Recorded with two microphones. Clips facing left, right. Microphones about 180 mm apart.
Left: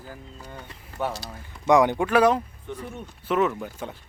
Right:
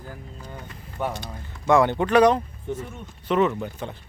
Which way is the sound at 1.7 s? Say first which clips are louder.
Right 1 dB; 15° left (ahead or behind).